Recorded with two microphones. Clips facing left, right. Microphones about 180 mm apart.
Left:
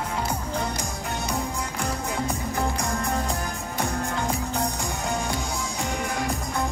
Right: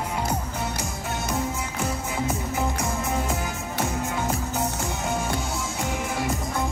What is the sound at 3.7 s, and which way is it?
Music, 5° right (ahead or behind).